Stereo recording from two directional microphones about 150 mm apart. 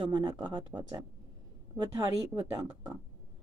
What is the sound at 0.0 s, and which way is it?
A woman's voice, 30° right (ahead or behind).